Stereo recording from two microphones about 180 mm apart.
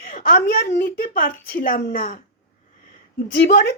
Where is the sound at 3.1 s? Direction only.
60° left (ahead or behind).